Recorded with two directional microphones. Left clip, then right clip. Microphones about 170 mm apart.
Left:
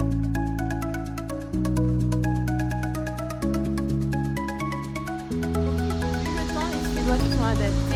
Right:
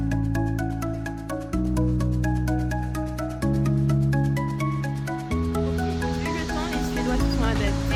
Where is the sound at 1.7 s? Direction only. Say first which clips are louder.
Left 2 dB; centre (ahead or behind).